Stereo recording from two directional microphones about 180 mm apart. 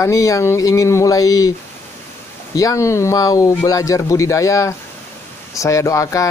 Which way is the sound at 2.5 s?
20° left (ahead or behind).